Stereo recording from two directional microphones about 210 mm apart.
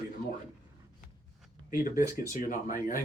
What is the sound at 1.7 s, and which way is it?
Speech, 40° left (ahead or behind).